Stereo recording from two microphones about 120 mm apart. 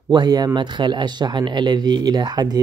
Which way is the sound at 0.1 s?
35° right (ahead or behind).